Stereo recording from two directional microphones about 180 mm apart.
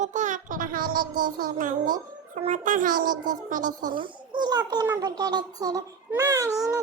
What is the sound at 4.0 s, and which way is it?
A child's voice, 25° right (ahead or behind).